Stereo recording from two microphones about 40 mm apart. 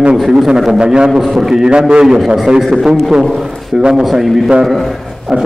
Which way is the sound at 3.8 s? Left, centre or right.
Centre.